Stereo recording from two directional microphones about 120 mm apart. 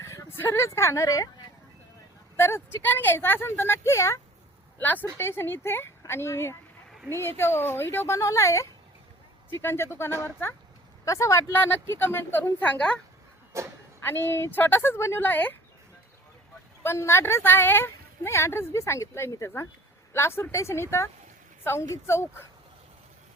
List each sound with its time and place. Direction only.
0.0 s a woman's voice: 25° left (ahead or behind)
2.3 s a woman's voice: 20° left (ahead or behind)
13.5 s speech: 25° right (ahead or behind)
14.0 s speech: 20° left (ahead or behind)
16.8 s speech: 20° left (ahead or behind)